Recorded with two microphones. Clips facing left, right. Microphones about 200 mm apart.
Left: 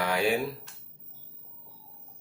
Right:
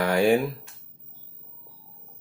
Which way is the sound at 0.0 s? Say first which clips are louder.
Right 7 dB; 50° right (ahead or behind).